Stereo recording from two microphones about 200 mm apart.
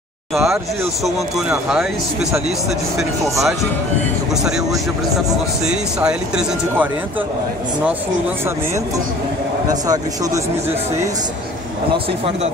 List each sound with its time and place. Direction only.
0.3 s speech: centre (ahead or behind)
4.3 s speech: 5° right (ahead or behind)
5.7 s speech: 5° right (ahead or behind)
9.7 s speech: 15° right (ahead or behind)